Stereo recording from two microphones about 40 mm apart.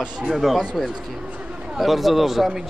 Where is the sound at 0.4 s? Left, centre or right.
Centre.